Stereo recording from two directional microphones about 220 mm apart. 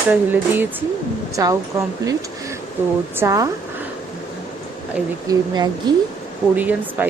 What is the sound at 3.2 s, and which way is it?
Speech, 15° right (ahead or behind).